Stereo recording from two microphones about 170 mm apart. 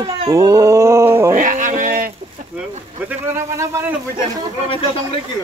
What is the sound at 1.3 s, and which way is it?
Speech, 50° right (ahead or behind).